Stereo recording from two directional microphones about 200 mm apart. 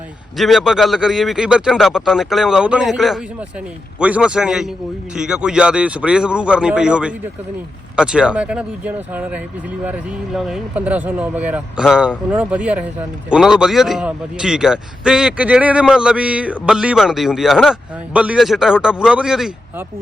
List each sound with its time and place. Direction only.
0.3 s a man's voice: centre (ahead or behind)